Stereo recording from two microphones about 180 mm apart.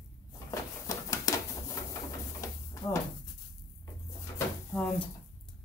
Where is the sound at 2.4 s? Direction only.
15° left (ahead or behind).